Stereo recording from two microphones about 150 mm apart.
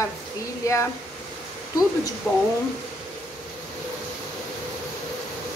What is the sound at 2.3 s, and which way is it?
Speech, 15° left (ahead or behind).